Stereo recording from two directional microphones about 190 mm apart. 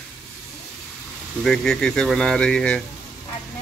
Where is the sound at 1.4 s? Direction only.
Centre (ahead or behind).